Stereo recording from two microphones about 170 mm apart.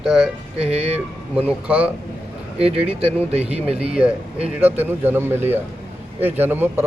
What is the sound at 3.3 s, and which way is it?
Speech, 35° right (ahead or behind).